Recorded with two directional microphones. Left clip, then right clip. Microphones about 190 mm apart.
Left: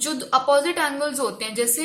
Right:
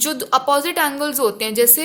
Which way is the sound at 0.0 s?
50° right (ahead or behind).